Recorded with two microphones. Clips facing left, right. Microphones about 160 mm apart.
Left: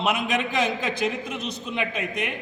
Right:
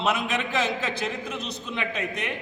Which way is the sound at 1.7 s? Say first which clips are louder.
Left 1 dB; 10° left (ahead or behind).